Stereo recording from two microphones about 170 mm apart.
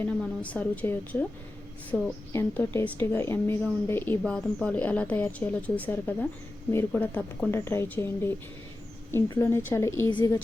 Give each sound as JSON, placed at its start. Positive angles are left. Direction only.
{"t": 0.2, "sound": "a woman's voice", "side_deg": 10}
{"t": 9.3, "sound": "a woman's voice", "side_deg": 15}
{"t": 10.1, "sound": "speech", "side_deg": 25}